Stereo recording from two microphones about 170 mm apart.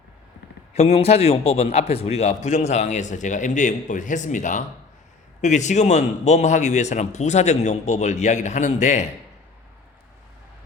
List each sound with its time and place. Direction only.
0.7 s a man's voice: 40° left (ahead or behind)